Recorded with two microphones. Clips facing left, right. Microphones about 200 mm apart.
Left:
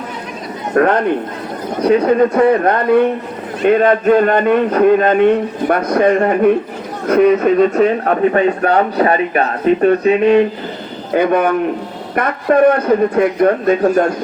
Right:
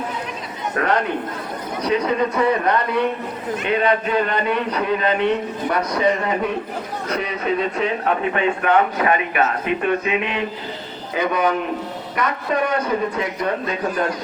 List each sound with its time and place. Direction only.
0.7 s a man's voice: 45° left (ahead or behind)
11.1 s a man's voice: 55° left (ahead or behind)